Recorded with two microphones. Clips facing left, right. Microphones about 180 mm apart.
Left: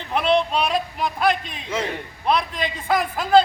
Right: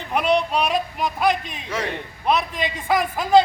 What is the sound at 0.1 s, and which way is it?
A man's voice, 15° right (ahead or behind).